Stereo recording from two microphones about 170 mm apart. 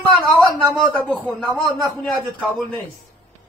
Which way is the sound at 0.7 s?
5° left (ahead or behind).